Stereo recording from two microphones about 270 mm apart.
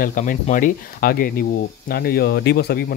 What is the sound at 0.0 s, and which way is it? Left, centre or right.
Speech, left.